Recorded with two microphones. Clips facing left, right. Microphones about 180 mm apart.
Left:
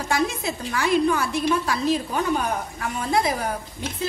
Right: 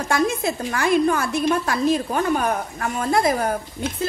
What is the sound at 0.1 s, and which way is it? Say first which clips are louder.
A woman's voice: right 3 dB; 50° right (ahead or behind).